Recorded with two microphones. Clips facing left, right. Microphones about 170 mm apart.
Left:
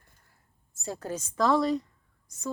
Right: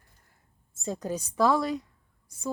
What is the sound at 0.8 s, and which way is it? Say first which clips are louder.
Speech: right 3 dB; 20° right (ahead or behind).